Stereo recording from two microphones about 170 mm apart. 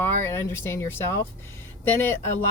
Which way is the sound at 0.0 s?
15° left (ahead or behind).